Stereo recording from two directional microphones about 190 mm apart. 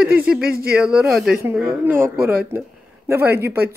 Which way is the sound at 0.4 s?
50° right (ahead or behind).